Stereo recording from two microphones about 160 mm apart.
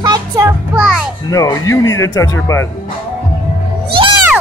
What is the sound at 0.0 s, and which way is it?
Music, 25° right (ahead or behind).